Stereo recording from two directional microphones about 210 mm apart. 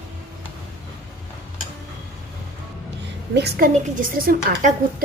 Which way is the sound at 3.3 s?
45° right (ahead or behind).